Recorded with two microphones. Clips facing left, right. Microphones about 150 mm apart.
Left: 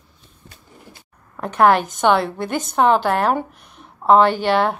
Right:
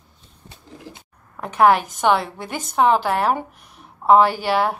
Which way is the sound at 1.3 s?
5° right (ahead or behind).